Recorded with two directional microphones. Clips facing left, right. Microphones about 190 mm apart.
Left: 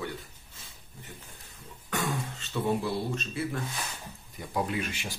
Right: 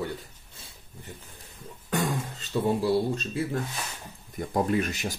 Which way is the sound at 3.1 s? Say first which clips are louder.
Right 4 dB; 35° right (ahead or behind).